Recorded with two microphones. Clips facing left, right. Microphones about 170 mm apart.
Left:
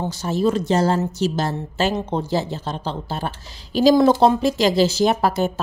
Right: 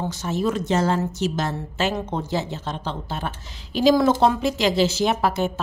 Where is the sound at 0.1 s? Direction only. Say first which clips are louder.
Left 4 dB; 35° left (ahead or behind).